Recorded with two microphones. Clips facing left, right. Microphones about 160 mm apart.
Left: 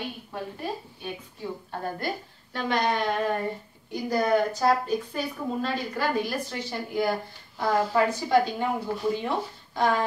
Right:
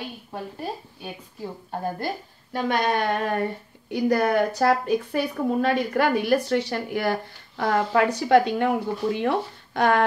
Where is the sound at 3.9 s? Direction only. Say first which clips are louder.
Right 3 dB; 70° right (ahead or behind).